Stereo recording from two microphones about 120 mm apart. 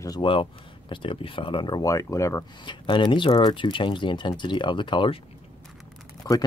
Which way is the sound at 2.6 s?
40° left (ahead or behind).